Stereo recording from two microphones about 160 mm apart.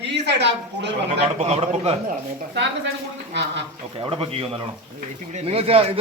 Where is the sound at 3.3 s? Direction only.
90° right.